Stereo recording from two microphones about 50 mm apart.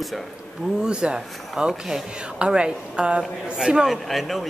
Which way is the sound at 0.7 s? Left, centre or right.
Centre.